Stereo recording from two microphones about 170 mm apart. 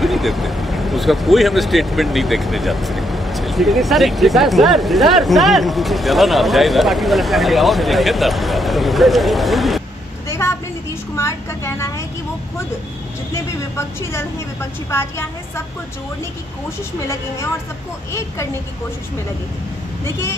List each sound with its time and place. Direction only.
0.0 s speech: centre (ahead or behind)
10.4 s a sound: 15° left (ahead or behind)
11.1 s speech: 15° left (ahead or behind)
14.9 s speech: 15° left (ahead or behind)